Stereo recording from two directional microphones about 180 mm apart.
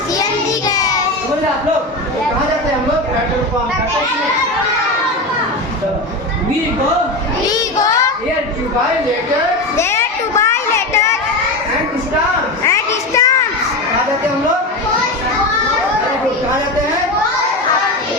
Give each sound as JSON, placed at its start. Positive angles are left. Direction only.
{"t": 0.7, "sound": "child singing", "side_deg": 20}
{"t": 9.7, "sound": "children playing", "side_deg": 15}
{"t": 12.6, "sound": "a sound", "side_deg": 15}